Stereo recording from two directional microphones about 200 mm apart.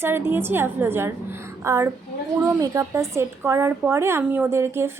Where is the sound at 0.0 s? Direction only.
10° right (ahead or behind).